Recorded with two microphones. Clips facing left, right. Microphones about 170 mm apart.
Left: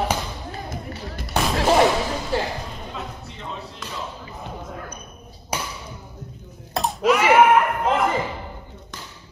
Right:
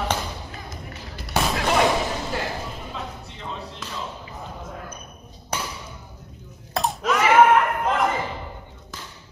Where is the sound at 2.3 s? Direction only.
30° left (ahead or behind).